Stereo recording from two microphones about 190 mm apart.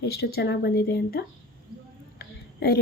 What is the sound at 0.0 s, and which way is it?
A woman's voice, 55° left (ahead or behind).